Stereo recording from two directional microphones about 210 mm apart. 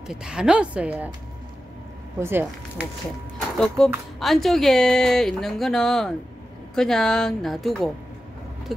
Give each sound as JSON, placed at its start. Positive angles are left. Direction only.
{"t": 0.0, "sound": "speech", "side_deg": -5}
{"t": 2.1, "sound": "speech", "side_deg": -10}
{"t": 3.3, "sound": "speech", "side_deg": 5}